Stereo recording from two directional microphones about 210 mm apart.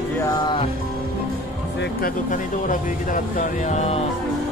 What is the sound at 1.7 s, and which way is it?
Speech, 40° left (ahead or behind).